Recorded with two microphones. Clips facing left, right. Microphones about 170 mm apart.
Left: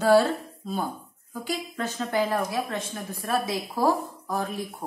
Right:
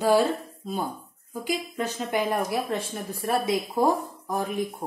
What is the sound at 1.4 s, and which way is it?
A woman's voice, 10° right (ahead or behind).